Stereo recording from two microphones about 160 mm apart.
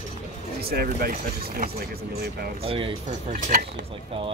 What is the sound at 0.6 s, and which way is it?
Speech, 70° right (ahead or behind).